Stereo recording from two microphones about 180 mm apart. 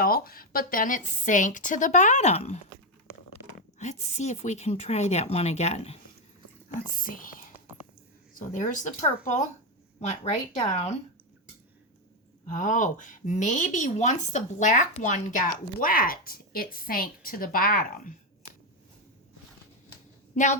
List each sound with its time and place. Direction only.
0.0 s a woman's voice: 55° left (ahead or behind); by 2.6 s 35° left (ahead or behind)
3.8 s a woman's voice: 40° left (ahead or behind)
6.9 s a woman's voice: 50° left (ahead or behind)
12.5 s a woman's voice: 45° left (ahead or behind)
20.3 s a woman's voice: 40° left (ahead or behind)